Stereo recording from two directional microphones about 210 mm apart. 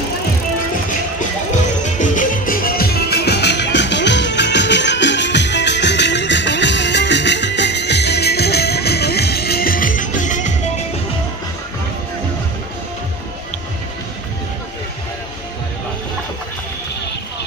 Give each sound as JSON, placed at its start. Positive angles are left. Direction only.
{"t": 1.5, "sound": "music", "side_deg": 35}